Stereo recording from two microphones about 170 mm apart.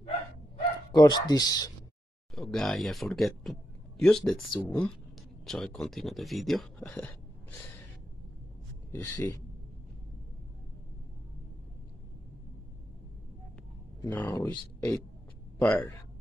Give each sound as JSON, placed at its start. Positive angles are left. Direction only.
{"t": 0.9, "sound": "speech", "side_deg": 25}
{"t": 2.3, "sound": "speech", "side_deg": 0}
{"t": 8.9, "sound": "speech", "side_deg": 10}
{"t": 14.0, "sound": "speech", "side_deg": 10}
{"t": 15.6, "sound": "speech", "side_deg": 5}